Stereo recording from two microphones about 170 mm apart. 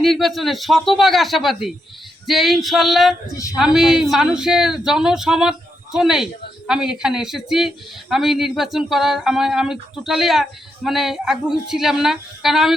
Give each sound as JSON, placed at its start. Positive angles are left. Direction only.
{"t": 0.0, "sound": "speech", "side_deg": 0}
{"t": 3.2, "sound": "speech", "side_deg": 20}
{"t": 3.6, "sound": "speech", "side_deg": 0}